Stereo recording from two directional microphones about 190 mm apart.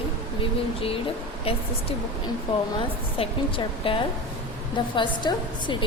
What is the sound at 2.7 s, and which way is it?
A woman's voice, 30° left (ahead or behind).